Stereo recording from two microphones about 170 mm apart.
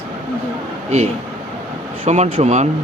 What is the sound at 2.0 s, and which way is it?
Speech, 40° right (ahead or behind).